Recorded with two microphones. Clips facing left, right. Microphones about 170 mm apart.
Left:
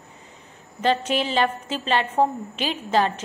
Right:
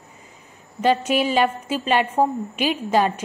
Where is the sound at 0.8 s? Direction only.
10° right (ahead or behind).